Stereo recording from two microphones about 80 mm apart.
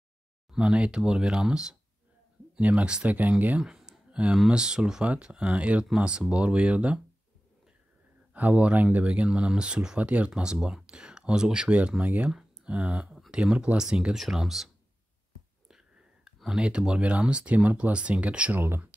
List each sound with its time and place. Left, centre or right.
0.5 s speech: centre
3.6 s a sound: centre
4.4 s speech: centre
8.3 s speech: centre
12.3 s speech: centre
16.3 s speech: centre